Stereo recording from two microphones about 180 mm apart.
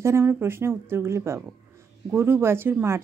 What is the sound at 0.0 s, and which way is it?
Speech, 15° right (ahead or behind).